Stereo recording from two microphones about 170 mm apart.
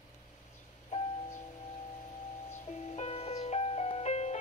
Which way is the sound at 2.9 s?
40° left (ahead or behind).